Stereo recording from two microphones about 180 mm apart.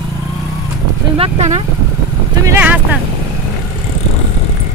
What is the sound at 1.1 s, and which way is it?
Speech, 35° right (ahead or behind).